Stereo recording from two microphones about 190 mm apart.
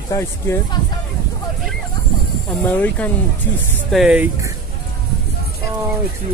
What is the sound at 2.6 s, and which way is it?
Speech, 10° left (ahead or behind).